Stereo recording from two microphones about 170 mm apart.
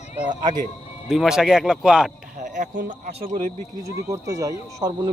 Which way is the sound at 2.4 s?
50° right (ahead or behind).